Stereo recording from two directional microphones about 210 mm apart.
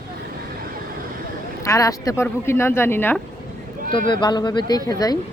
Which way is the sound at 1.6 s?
15° left (ahead or behind).